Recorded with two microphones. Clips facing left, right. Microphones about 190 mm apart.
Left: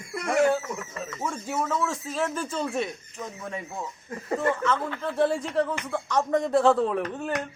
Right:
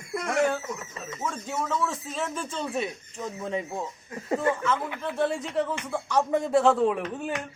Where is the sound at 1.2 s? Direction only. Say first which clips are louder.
Left 1 dB; 5° left (ahead or behind).